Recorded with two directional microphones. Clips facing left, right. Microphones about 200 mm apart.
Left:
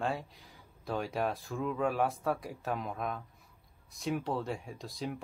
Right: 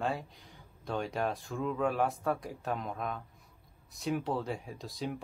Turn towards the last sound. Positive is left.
turn(degrees=0)  # may be behind; listen again after turning